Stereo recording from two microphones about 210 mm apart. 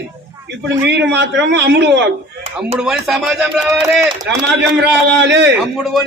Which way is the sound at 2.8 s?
Centre (ahead or behind).